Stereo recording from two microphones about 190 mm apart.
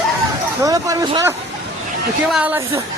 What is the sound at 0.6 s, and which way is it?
Speech, 20° right (ahead or behind).